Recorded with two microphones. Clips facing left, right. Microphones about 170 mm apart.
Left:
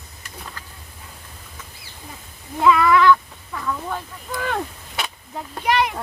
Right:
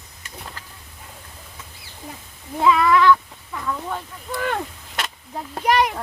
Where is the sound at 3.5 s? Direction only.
5° right (ahead or behind).